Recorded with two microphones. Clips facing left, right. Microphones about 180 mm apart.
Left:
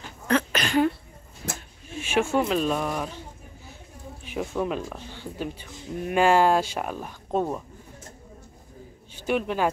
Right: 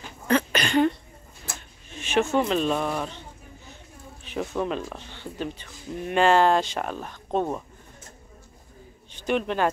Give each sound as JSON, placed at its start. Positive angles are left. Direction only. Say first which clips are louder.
{"t": 0.3, "sound": "a sound", "louder": "right 1 dB", "side_deg": 0}
{"t": 1.9, "sound": "speech", "louder": "right 1 dB", "side_deg": 10}
{"t": 4.2, "sound": "speech", "louder": "even", "side_deg": 10}
{"t": 9.1, "sound": "a man's voice", "louder": "even", "side_deg": 5}